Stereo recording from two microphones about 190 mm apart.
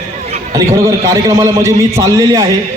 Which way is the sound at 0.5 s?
15° right (ahead or behind).